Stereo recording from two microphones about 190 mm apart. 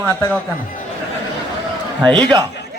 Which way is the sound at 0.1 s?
15° left (ahead or behind).